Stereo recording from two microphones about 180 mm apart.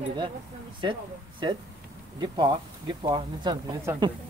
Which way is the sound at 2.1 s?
25° right (ahead or behind).